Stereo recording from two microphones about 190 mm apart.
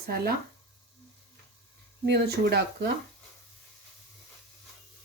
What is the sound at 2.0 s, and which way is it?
Speech, 60° right (ahead or behind).